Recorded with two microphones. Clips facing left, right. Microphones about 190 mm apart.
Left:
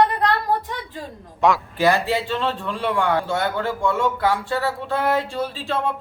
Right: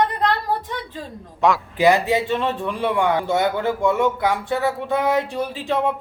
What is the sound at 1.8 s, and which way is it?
A man's voice, 20° right (ahead or behind).